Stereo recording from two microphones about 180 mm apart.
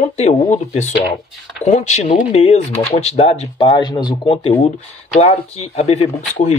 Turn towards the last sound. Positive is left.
turn(degrees=35)  # may be behind; listen again after turning